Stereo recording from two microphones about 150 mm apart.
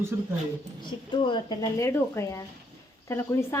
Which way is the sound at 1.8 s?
20° left (ahead or behind).